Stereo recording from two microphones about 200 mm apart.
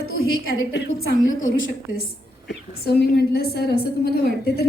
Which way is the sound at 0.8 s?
50° left (ahead or behind).